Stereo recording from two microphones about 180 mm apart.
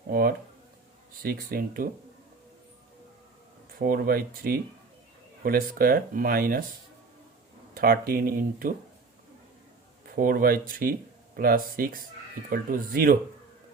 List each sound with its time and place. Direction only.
0.1 s speech: 55° right (ahead or behind)
3.8 s speech: 55° right (ahead or behind)
7.7 s speech: 55° right (ahead or behind)
10.2 s speech: 55° right (ahead or behind)